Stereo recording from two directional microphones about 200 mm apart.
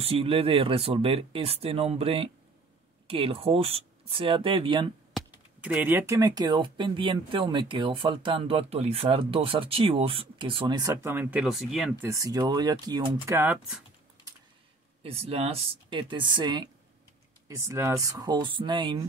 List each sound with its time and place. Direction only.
0.0 s speech: 30° right (ahead or behind)
5.1 s speech: 5° right (ahead or behind)
12.1 s speech: 15° right (ahead or behind)
13.4 s speech: 5° right (ahead or behind)
15.0 s speech: 30° right (ahead or behind)